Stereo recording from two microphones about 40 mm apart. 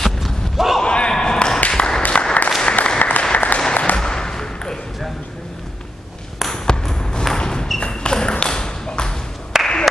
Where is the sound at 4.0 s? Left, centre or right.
Centre.